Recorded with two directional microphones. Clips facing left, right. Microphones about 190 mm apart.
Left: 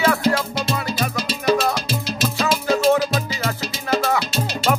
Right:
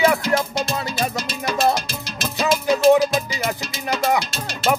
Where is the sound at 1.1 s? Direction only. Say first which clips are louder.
Left 4 dB; 50° right (ahead or behind).